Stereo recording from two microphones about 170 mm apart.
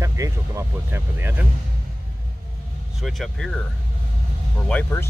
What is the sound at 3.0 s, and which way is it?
Speech, centre (ahead or behind).